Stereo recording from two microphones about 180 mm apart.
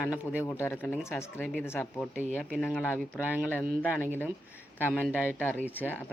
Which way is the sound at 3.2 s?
10° right (ahead or behind).